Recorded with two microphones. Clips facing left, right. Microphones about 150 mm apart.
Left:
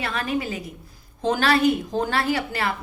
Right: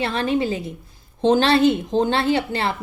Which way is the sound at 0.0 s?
30° right (ahead or behind).